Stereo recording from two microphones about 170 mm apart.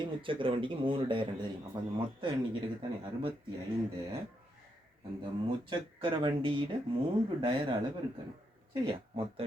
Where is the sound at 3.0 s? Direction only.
30° right (ahead or behind).